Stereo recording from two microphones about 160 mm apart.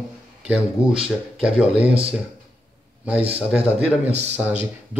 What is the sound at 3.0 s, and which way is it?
Speech, 5° right (ahead or behind).